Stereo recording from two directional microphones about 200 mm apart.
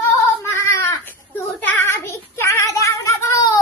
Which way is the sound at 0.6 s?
15° left (ahead or behind).